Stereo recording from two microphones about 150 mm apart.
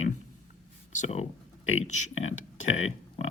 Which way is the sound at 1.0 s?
45° left (ahead or behind).